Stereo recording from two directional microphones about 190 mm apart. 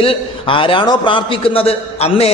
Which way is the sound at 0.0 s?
30° left (ahead or behind).